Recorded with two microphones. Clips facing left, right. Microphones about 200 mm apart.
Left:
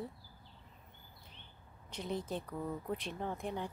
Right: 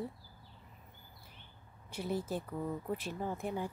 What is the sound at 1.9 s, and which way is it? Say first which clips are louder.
Speech: right 2 dB; 5° right (ahead or behind).